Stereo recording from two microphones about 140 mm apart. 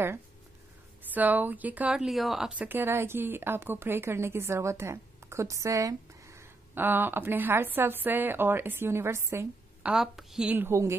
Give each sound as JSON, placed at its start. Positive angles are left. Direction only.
{"t": 1.1, "sound": "speech", "side_deg": -10}
{"t": 9.8, "sound": "speech", "side_deg": -5}